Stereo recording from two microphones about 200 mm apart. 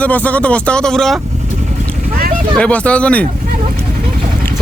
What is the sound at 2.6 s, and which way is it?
Speech, 5° left (ahead or behind).